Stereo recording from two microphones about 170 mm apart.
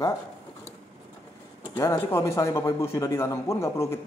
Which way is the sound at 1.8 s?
15° left (ahead or behind).